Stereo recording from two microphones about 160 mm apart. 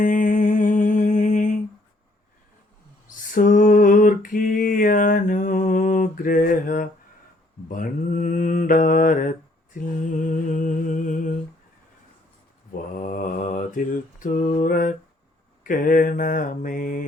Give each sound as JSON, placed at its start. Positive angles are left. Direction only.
{"t": 0.0, "sound": "humming", "side_deg": 55}
{"t": 3.2, "sound": "a sound", "side_deg": 55}
{"t": 7.7, "sound": "mantra", "side_deg": 55}
{"t": 12.7, "sound": "mantra", "side_deg": 55}